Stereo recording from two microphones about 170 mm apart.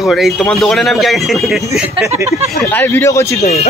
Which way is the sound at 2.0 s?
15° right (ahead or behind).